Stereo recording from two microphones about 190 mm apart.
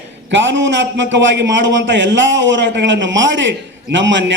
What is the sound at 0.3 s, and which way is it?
A man's voice, 70° right (ahead or behind).